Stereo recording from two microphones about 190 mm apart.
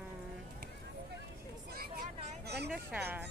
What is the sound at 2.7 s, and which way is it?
Speech, 10° right (ahead or behind).